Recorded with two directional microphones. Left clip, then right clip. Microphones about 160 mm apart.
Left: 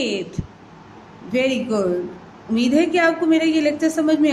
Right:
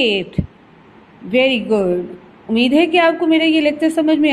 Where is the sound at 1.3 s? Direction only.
10° right (ahead or behind).